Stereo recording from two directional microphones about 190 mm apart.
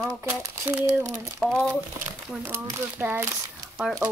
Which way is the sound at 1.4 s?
5° left (ahead or behind).